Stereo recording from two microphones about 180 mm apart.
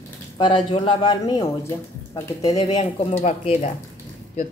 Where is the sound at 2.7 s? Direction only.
35° left (ahead or behind).